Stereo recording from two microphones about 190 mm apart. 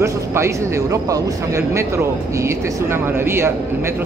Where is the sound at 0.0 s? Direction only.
15° right (ahead or behind).